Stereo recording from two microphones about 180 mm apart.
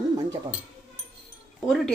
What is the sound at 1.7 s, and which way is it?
Speech, centre (ahead or behind).